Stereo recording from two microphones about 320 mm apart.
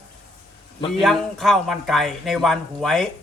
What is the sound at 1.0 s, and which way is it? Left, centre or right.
A man's voice, centre.